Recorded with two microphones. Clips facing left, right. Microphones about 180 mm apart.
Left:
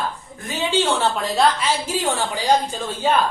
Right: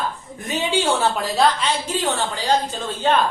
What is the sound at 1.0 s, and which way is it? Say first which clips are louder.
A woman's voice: even; centre (ahead or behind).